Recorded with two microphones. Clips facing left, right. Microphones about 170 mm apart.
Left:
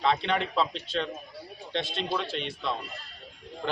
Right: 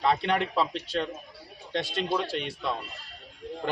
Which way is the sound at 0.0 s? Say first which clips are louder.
Right 1 dB; 10° right (ahead or behind).